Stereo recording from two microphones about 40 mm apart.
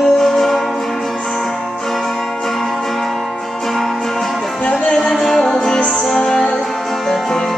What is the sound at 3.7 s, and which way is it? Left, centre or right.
Music, centre.